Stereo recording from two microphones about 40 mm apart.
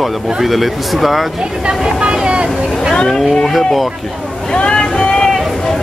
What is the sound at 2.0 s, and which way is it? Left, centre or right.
Vehicle, right.